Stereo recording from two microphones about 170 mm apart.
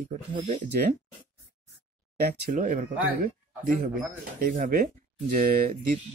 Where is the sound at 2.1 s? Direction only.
55° right (ahead or behind).